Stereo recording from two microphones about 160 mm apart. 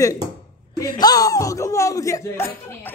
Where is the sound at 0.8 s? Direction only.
25° left (ahead or behind).